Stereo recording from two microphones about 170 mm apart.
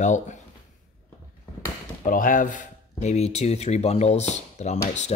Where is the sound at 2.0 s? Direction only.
50° left (ahead or behind).